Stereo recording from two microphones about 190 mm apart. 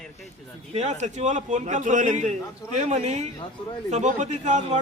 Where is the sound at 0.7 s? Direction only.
35° right (ahead or behind).